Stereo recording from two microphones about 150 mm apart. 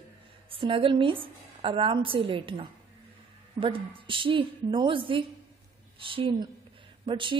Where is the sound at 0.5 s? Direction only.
35° right (ahead or behind).